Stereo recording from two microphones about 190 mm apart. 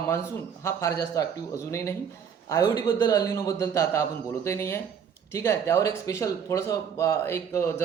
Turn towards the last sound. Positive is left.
turn(degrees=15)  # may be behind; listen again after turning